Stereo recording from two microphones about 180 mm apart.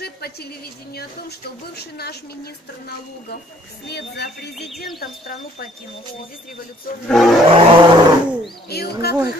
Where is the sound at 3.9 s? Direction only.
65° left (ahead or behind).